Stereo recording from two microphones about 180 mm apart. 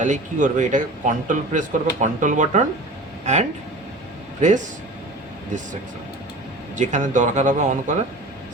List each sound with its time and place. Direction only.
0.0 s a man's voice: 45° right (ahead or behind)
6.7 s a man's voice: 45° right (ahead or behind)